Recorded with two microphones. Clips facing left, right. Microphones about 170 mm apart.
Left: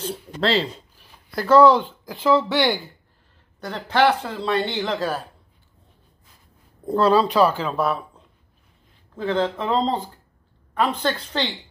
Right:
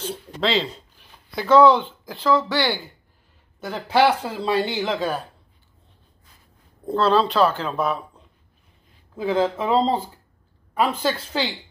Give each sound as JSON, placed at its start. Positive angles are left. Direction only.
{"t": 0.0, "sound": "speech", "side_deg": 0}
{"t": 2.3, "sound": "speech", "side_deg": 20}
{"t": 3.5, "sound": "speech", "side_deg": -5}
{"t": 7.0, "sound": "speech", "side_deg": 10}
{"t": 9.1, "sound": "speech", "side_deg": -5}